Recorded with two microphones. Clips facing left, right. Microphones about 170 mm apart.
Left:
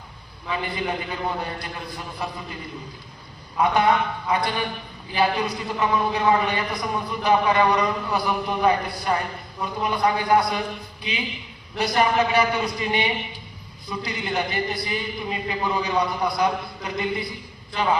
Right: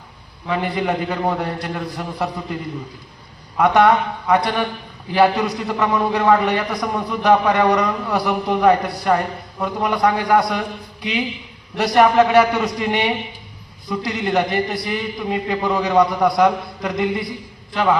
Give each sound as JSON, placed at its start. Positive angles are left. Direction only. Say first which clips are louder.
{"t": 0.6, "sound": "a man's voice", "louder": "right 7 dB", "side_deg": -75}
{"t": 3.6, "sound": "a man's voice", "louder": "right 5 dB", "side_deg": -75}
{"t": 11.8, "sound": "a man's voice", "louder": "right 7 dB", "side_deg": -85}